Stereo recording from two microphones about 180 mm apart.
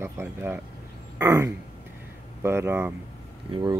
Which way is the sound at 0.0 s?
15° right (ahead or behind).